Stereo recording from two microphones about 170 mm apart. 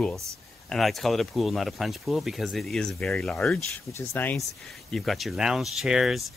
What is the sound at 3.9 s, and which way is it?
Speech, 15° left (ahead or behind).